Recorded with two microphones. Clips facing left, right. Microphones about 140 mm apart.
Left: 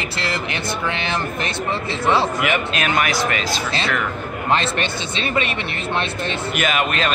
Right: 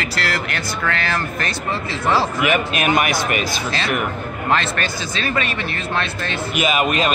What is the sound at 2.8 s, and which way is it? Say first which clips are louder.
Speech: right 3 dB; 20° right (ahead or behind).